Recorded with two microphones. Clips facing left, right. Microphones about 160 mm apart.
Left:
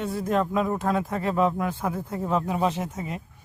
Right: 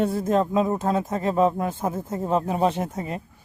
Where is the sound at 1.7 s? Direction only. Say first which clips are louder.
Right 2 dB; 20° right (ahead or behind).